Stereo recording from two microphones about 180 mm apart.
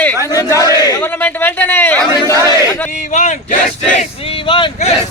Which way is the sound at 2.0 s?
20° right (ahead or behind).